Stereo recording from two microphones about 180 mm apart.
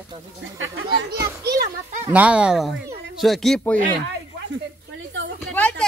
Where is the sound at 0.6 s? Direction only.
90° right.